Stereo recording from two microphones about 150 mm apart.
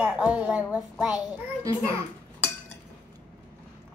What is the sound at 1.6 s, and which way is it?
Speech, 20° right (ahead or behind).